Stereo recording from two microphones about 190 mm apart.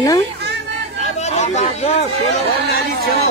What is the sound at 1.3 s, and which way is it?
Speech, 35° left (ahead or behind).